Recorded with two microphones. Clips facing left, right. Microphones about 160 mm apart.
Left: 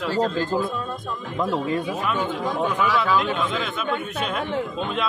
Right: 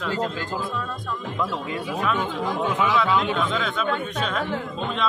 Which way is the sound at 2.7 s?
20° right (ahead or behind).